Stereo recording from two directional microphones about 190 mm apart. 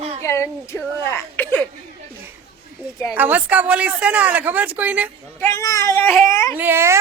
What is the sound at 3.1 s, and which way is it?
A woman's voice, 10° right (ahead or behind).